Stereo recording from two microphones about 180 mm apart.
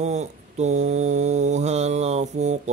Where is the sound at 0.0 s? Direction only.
40° right (ahead or behind).